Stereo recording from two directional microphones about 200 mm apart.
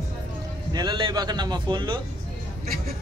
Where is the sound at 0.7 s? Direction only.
25° right (ahead or behind).